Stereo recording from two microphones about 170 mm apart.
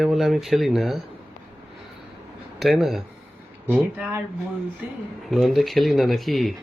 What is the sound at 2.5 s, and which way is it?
Speech, centre (ahead or behind).